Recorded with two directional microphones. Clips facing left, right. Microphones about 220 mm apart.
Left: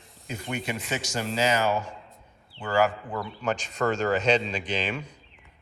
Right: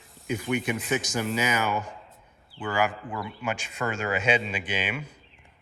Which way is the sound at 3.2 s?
10° right (ahead or behind).